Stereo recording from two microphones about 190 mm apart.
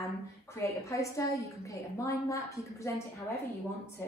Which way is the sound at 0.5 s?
15° left (ahead or behind).